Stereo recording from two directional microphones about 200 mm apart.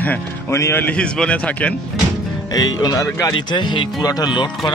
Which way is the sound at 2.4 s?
20° left (ahead or behind).